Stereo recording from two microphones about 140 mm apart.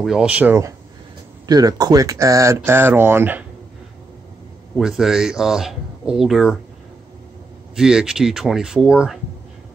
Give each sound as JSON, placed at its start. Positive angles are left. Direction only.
{"t": 0.0, "sound": "speech", "side_deg": -5}
{"t": 1.5, "sound": "speech", "side_deg": -30}
{"t": 4.7, "sound": "speech", "side_deg": -5}
{"t": 7.7, "sound": "speech", "side_deg": -5}